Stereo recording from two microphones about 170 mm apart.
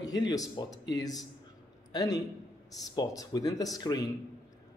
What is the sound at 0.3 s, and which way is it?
A man's voice, 20° left (ahead or behind).